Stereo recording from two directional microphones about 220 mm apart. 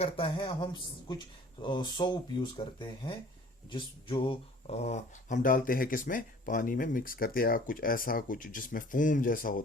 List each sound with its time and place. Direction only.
0.0 s speech: 25° left (ahead or behind); by 9.6 s 40° left (ahead or behind)